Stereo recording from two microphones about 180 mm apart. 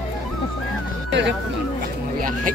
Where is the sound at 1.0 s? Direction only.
75° right (ahead or behind).